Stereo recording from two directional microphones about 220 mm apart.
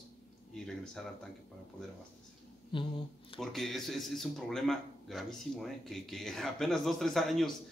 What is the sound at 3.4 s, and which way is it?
Speech, centre (ahead or behind).